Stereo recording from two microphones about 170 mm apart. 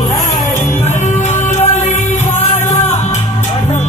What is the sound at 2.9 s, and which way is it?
Music, 45° left (ahead or behind).